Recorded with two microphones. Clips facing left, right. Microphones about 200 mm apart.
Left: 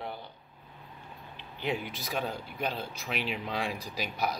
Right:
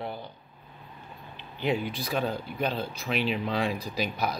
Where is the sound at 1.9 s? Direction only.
15° left (ahead or behind).